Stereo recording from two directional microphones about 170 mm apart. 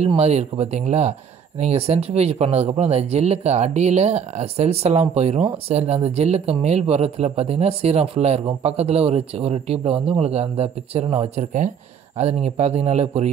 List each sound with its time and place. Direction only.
0.0 s speech: 40° right (ahead or behind)